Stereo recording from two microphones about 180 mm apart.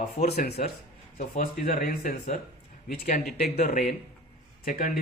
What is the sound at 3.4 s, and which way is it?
Speech, 65° left (ahead or behind).